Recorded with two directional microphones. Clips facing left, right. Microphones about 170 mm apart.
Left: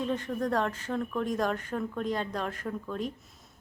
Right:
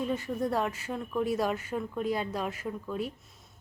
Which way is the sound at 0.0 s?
10° right (ahead or behind).